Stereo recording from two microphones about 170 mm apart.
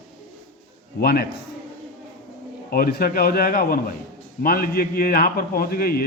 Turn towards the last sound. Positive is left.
turn(degrees=60)  # may be behind; listen again after turning